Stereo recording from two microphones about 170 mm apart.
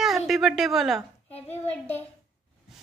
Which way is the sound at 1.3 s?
10° left (ahead or behind).